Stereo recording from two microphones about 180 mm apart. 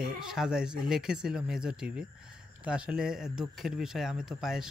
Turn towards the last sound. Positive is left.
turn(degrees=0)  # may be behind; listen again after turning